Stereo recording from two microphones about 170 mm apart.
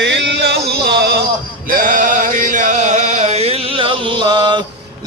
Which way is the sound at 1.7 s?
55° right (ahead or behind).